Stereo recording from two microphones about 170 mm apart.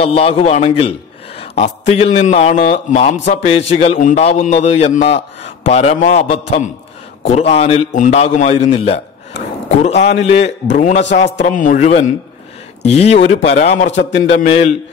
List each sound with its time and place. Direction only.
0.0 s a man's voice: 35° left (ahead or behind)
13.8 s a man's voice: 90° left